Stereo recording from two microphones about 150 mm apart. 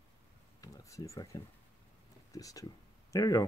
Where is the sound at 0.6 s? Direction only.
20° left (ahead or behind).